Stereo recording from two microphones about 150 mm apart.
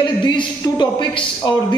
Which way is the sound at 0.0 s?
30° left (ahead or behind).